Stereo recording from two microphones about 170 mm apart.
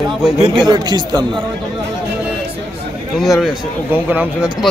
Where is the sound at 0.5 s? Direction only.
25° right (ahead or behind).